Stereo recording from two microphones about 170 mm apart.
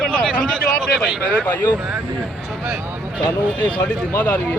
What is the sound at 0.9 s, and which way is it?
Speech, 5° left (ahead or behind).